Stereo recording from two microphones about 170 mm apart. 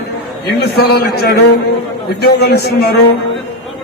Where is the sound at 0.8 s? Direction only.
65° left (ahead or behind).